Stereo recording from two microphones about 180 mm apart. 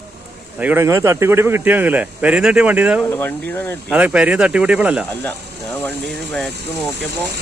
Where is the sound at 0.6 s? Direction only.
10° right (ahead or behind).